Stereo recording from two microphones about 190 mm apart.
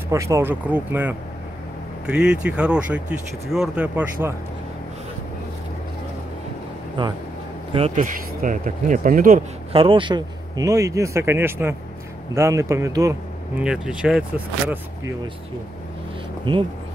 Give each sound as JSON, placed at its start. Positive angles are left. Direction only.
{"t": 0.1, "sound": "speech", "side_deg": -15}
{"t": 7.0, "sound": "speech", "side_deg": -25}
{"t": 7.9, "sound": "speech", "side_deg": -45}
{"t": 9.7, "sound": "speech", "side_deg": -30}
{"t": 13.7, "sound": "speech", "side_deg": -5}